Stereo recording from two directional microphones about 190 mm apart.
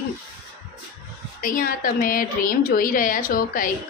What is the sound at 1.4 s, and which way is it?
A woman's voice, 45° left (ahead or behind).